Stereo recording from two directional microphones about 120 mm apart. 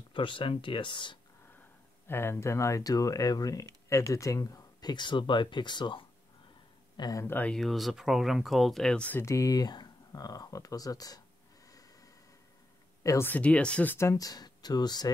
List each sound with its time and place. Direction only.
0.1 s speech: 45° left (ahead or behind)
2.0 s speech: 20° left (ahead or behind)
7.2 s speech: 15° left (ahead or behind)
7.5 s speech: centre (ahead or behind)
9.2 s speech: 25° left (ahead or behind)
13.0 s speech: 25° left (ahead or behind)
13.3 s speech: 10° left (ahead or behind)
13.9 s speech: 25° left (ahead or behind)